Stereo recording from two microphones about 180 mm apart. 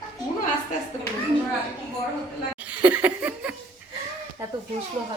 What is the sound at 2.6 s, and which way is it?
Laughter, 10° right (ahead or behind).